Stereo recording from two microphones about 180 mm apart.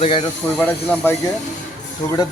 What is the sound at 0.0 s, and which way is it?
Speech, 35° left (ahead or behind).